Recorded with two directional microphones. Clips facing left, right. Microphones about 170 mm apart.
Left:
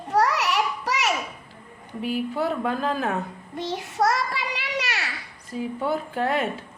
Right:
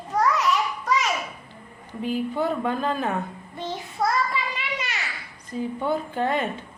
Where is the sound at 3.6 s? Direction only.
80° left.